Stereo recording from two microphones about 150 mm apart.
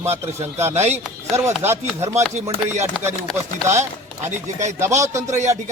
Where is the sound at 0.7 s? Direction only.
50° right (ahead or behind).